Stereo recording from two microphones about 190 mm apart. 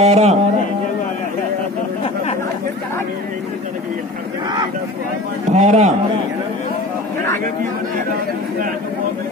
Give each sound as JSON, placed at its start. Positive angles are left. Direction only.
{"t": 0.0, "sound": "a man's voice", "side_deg": -35}
{"t": 5.5, "sound": "a man's voice", "side_deg": -35}